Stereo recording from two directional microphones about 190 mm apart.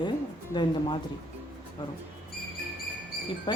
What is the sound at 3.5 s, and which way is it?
Speech, 25° left (ahead or behind).